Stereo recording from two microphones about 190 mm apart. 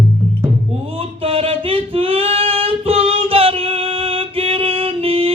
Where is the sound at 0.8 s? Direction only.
30° right (ahead or behind).